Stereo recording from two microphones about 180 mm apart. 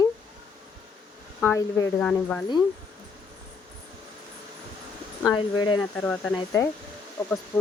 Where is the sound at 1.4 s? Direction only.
15° left (ahead or behind).